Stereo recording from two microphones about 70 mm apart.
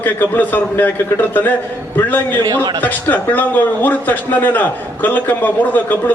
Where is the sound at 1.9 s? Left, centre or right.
Left.